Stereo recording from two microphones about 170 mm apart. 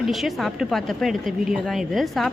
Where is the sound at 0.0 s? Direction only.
Centre (ahead or behind).